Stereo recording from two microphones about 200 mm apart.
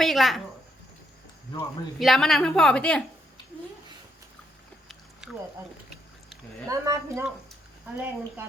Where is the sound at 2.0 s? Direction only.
Centre (ahead or behind).